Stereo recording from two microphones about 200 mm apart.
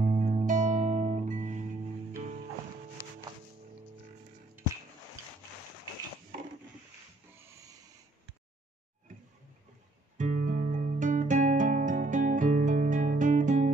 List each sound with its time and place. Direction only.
0.0 s music: 40° right (ahead or behind)
10.1 s music: 40° right (ahead or behind)